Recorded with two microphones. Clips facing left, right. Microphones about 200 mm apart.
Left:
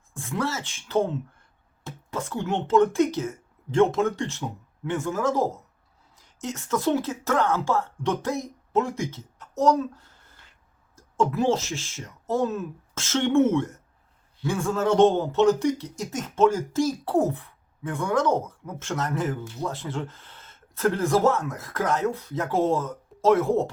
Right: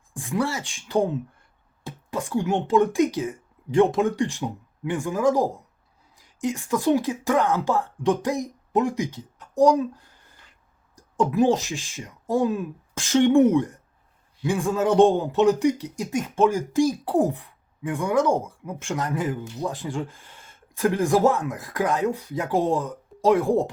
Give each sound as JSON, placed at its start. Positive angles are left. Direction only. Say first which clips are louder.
{"t": 0.1, "sound": "speech", "louder": "right 3 dB", "side_deg": -15}